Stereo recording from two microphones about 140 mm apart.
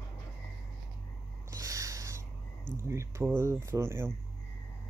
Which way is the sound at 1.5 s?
25° right (ahead or behind).